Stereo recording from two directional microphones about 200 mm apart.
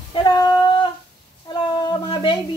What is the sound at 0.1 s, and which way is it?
Female singing, 20° left (ahead or behind).